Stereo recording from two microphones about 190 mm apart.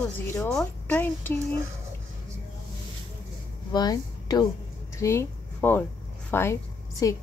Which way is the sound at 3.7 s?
20° left (ahead or behind).